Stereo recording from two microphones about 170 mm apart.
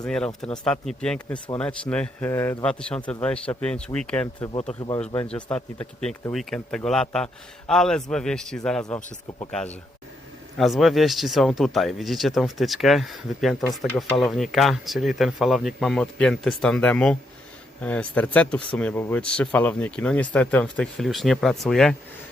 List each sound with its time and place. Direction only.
0.0 s speech: 5° left (ahead or behind)
5.3 s speech: 5° left (ahead or behind)